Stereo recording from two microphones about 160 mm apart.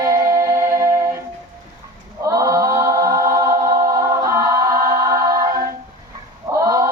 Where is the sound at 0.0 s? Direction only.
20° right (ahead or behind).